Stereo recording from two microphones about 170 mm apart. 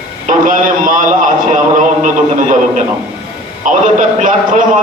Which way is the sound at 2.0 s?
50° right (ahead or behind).